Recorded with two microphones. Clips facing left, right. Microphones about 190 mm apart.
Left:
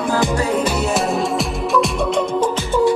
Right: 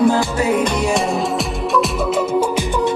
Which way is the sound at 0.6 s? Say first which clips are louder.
Right 1 dB; 5° left (ahead or behind).